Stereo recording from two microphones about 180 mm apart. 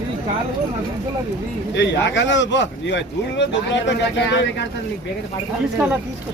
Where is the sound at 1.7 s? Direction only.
80° left.